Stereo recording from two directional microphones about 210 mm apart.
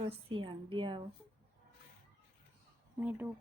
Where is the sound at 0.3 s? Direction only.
25° right (ahead or behind).